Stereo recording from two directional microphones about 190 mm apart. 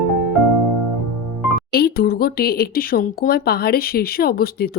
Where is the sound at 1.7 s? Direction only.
55° left (ahead or behind).